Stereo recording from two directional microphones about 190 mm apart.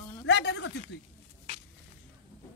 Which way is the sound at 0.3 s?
65° left (ahead or behind).